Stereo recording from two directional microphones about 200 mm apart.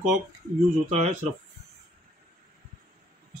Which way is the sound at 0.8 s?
35° right (ahead or behind).